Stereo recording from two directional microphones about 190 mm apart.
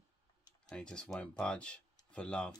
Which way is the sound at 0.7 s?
5° left (ahead or behind).